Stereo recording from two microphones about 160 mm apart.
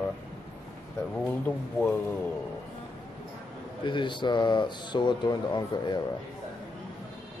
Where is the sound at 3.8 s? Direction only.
30° left (ahead or behind).